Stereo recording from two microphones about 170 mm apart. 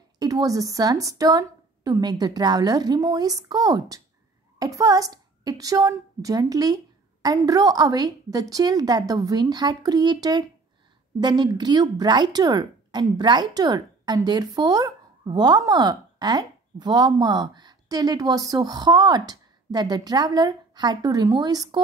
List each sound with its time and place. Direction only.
0.2 s speech: 20° right (ahead or behind)